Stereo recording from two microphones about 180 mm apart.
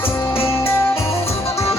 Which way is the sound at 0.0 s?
15° left (ahead or behind).